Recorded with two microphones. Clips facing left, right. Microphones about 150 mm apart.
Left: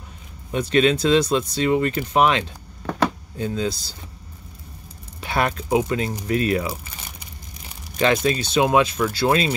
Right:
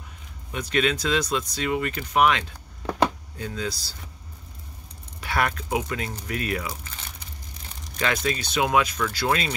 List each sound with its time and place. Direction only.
0.5 s speech: 30° left (ahead or behind)
5.2 s speech: 25° left (ahead or behind)
6.7 s crumpling: 10° left (ahead or behind)
8.0 s speech: 25° left (ahead or behind)